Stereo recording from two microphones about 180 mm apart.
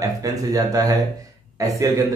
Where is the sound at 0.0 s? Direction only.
20° right (ahead or behind).